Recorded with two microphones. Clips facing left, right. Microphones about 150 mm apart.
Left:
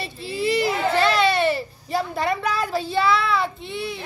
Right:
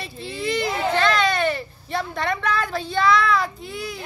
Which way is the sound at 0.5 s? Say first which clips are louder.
Left 2 dB; 10° left (ahead or behind).